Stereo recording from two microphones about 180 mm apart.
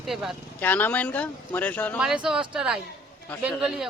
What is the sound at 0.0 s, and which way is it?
Speech, centre (ahead or behind).